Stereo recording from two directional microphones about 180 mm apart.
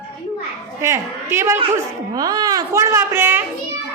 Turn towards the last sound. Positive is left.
turn(degrees=-10)  # may be behind; listen again after turning